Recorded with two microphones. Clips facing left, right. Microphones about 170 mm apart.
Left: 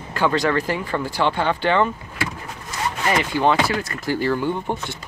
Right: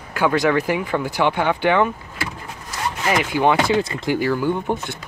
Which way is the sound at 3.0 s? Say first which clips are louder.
Right 1 dB; 10° right (ahead or behind).